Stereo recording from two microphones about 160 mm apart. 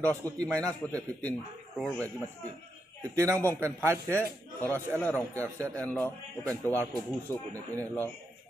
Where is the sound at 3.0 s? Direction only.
20° right (ahead or behind).